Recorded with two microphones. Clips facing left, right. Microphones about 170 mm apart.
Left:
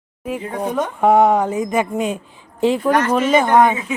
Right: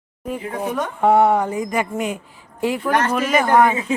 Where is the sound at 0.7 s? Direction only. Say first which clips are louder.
Left 2 dB; 15° left (ahead or behind).